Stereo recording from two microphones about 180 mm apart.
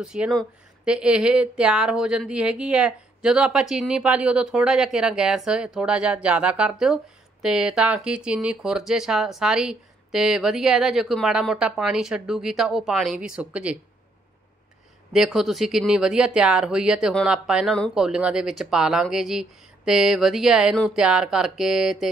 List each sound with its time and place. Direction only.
0.0 s speech: 5° right (ahead or behind)
15.1 s speech: centre (ahead or behind)